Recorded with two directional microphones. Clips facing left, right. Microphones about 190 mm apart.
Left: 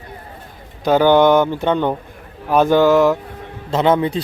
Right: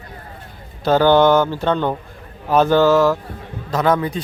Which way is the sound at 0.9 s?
15° left (ahead or behind).